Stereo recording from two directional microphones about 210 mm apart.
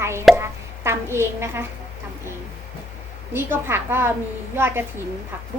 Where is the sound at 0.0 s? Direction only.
10° right (ahead or behind).